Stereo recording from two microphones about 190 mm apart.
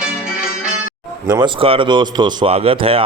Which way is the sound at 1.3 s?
25° right (ahead or behind).